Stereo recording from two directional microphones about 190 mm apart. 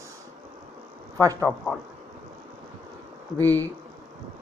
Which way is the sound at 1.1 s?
15° right (ahead or behind).